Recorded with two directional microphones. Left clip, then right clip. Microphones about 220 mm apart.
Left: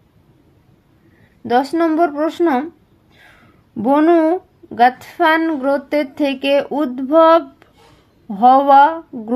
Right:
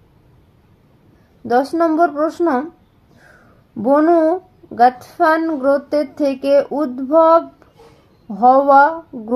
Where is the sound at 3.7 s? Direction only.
40° left (ahead or behind).